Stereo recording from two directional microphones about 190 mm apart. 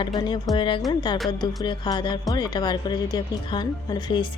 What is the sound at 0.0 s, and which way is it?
Speech, 20° left (ahead or behind).